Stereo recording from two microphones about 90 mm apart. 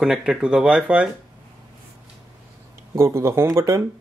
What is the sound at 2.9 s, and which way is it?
Speech, 30° right (ahead or behind).